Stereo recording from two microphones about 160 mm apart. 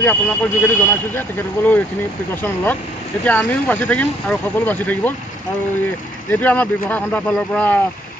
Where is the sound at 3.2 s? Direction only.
10° left (ahead or behind).